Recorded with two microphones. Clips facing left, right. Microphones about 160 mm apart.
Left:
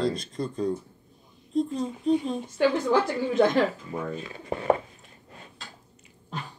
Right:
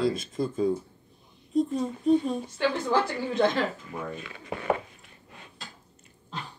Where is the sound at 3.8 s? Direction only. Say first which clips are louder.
Left 3 dB; 30° left (ahead or behind).